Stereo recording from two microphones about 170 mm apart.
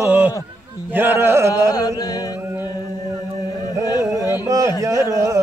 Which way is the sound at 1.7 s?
20° left (ahead or behind).